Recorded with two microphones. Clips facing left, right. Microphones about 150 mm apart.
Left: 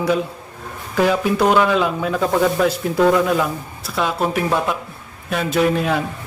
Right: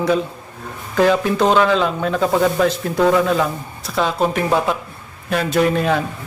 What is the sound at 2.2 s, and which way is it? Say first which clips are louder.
Mantra: right 1 dB; centre (ahead or behind).